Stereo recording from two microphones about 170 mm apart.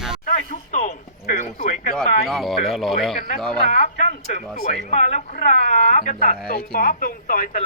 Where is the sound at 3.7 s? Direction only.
50° left (ahead or behind).